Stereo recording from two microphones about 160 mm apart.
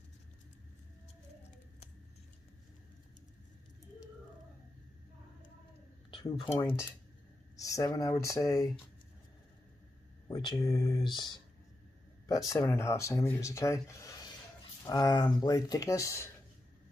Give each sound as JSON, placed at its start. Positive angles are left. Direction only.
{"t": 6.5, "sound": "speech", "side_deg": 15}
{"t": 10.2, "sound": "speech", "side_deg": 25}